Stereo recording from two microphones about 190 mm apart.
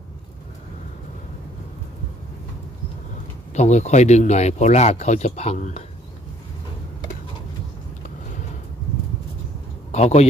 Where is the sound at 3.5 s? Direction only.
35° left (ahead or behind).